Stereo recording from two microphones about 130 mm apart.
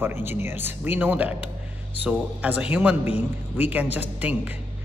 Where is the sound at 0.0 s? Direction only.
15° right (ahead or behind).